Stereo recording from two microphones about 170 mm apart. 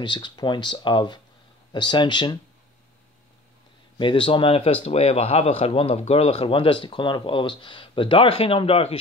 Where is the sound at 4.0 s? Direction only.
30° left (ahead or behind).